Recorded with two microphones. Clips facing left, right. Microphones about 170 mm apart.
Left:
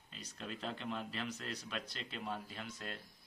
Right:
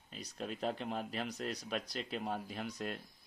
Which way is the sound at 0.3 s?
45° right (ahead or behind).